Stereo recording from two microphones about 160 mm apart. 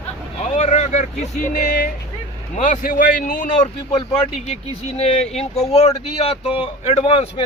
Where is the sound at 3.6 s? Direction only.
35° left (ahead or behind).